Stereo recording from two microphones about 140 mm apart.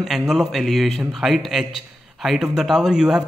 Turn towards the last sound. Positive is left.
turn(degrees=-5)  # may be behind; listen again after turning